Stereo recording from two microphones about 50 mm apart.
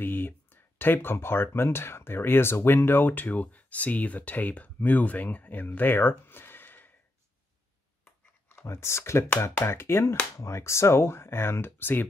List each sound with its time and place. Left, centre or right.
0.0 s speech: left
5.8 s a sound: left
8.6 s speech: left
10.3 s speech: left